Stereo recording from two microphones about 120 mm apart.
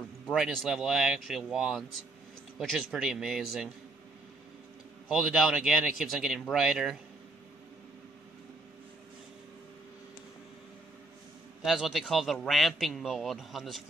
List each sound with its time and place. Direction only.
0.3 s a man's voice: 5° right (ahead or behind)
5.0 s a man's voice: centre (ahead or behind)
11.6 s a man's voice: centre (ahead or behind)